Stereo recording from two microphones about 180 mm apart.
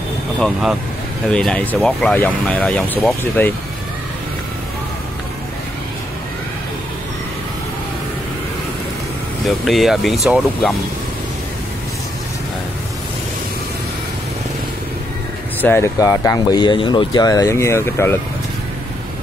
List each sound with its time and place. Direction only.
0.4 s speech: centre (ahead or behind)
9.7 s speech: centre (ahead or behind)
15.6 s speech: 15° left (ahead or behind)